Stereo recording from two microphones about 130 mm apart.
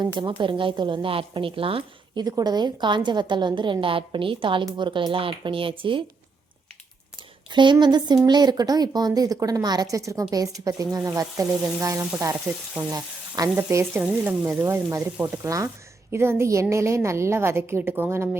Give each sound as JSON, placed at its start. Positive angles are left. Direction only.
{"t": 0.0, "sound": "a woman's voice", "side_deg": -35}
{"t": 2.2, "sound": "a woman's voice", "side_deg": -30}
{"t": 7.5, "sound": "a woman's voice", "side_deg": -35}
{"t": 13.6, "sound": "a woman's voice", "side_deg": -15}